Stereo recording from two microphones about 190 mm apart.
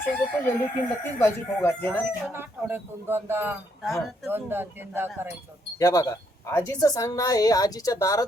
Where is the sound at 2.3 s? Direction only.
10° right (ahead or behind).